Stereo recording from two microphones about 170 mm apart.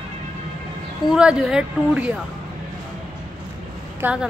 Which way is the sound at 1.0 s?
5° right (ahead or behind).